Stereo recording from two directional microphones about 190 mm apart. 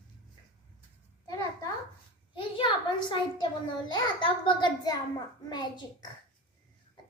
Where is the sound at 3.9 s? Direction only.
25° left (ahead or behind).